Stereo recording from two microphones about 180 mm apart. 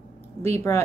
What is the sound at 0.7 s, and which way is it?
Speech, 15° left (ahead or behind).